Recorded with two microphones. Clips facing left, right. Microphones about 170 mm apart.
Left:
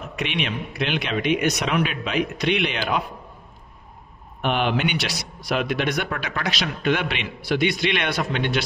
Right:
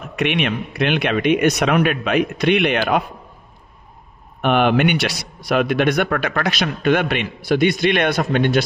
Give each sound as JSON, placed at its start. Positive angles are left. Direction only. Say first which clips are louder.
{"t": 0.1, "sound": "speech", "louder": "right 8 dB", "side_deg": -60}
{"t": 4.4, "sound": "speech", "louder": "right 7 dB", "side_deg": -55}